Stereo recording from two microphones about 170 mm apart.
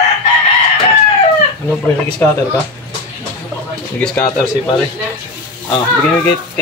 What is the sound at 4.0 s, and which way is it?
Speech, 5° left (ahead or behind).